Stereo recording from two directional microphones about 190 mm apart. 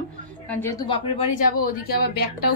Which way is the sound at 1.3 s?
50° left (ahead or behind).